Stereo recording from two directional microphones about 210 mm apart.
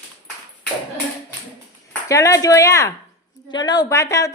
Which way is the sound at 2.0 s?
15° left (ahead or behind).